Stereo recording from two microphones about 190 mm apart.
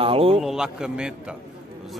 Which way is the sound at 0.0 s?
30° right (ahead or behind).